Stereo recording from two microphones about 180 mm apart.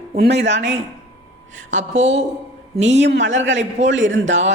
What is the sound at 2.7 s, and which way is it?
Speech, 40° right (ahead or behind).